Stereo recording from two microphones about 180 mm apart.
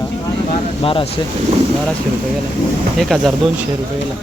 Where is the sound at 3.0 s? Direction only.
Centre (ahead or behind).